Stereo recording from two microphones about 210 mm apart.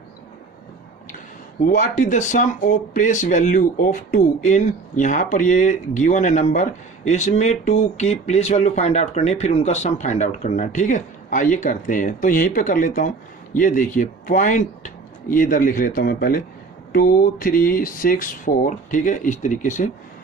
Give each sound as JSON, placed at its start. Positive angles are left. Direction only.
{"t": 1.7, "sound": "speech", "side_deg": 35}